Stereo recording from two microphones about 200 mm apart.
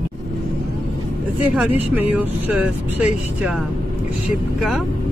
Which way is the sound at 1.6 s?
10° right (ahead or behind).